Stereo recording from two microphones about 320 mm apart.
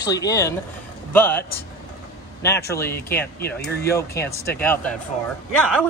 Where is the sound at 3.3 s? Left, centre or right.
Left.